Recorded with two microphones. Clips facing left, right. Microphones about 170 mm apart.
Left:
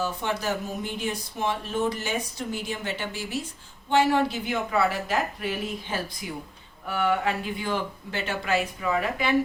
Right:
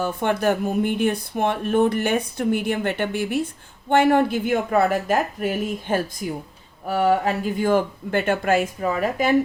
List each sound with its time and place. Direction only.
0.0 s speech: 55° right (ahead or behind)